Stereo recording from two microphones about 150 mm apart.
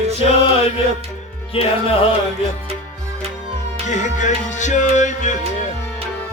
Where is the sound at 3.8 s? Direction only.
55° left (ahead or behind).